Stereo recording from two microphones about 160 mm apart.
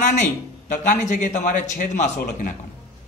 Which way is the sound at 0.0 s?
50° left (ahead or behind).